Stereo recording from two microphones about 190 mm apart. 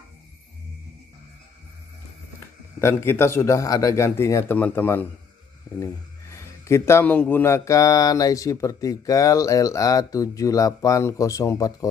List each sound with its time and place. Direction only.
2.8 s a man's voice: 15° left (ahead or behind)